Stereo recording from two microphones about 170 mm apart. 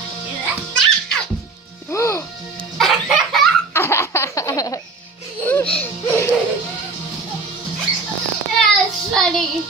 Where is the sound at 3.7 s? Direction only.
15° left (ahead or behind).